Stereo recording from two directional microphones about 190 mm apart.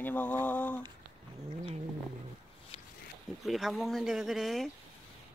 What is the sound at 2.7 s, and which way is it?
Wild animals, 30° left (ahead or behind).